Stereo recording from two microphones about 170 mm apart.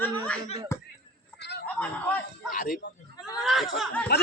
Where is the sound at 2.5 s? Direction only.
55° left (ahead or behind).